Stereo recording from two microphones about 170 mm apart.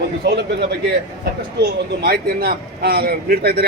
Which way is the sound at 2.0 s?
65° right (ahead or behind).